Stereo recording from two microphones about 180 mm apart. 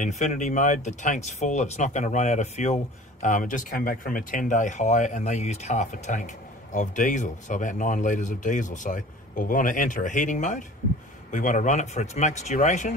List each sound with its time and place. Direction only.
0.0 s speech: 40° left (ahead or behind)